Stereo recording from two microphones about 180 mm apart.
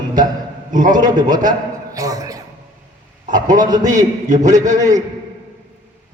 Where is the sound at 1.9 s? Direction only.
20° right (ahead or behind).